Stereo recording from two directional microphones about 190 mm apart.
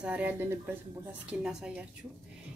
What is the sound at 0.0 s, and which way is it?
Speech, 5° right (ahead or behind).